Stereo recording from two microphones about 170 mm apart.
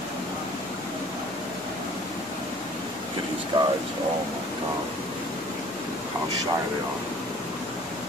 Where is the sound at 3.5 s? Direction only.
30° right (ahead or behind).